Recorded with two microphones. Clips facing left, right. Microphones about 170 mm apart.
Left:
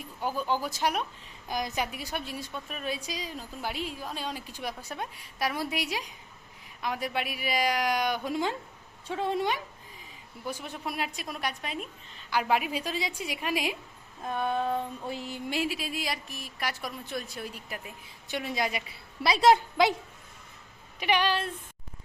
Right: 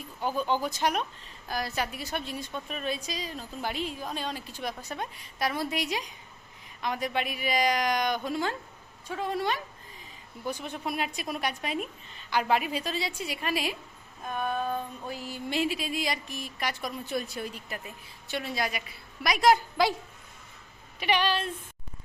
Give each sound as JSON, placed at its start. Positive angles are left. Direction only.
{"t": 0.2, "sound": "a woman's voice", "side_deg": 10}
{"t": 1.5, "sound": "a woman's voice", "side_deg": 15}
{"t": 9.0, "sound": "mantra", "side_deg": 25}
{"t": 10.4, "sound": "speech", "side_deg": 5}
{"t": 12.3, "sound": "a woman's voice", "side_deg": 5}
{"t": 14.3, "sound": "mantra", "side_deg": 25}
{"t": 15.4, "sound": "speech", "side_deg": 5}
{"t": 19.2, "sound": "mantra", "side_deg": 30}
{"t": 21.0, "sound": "a woman's voice", "side_deg": 15}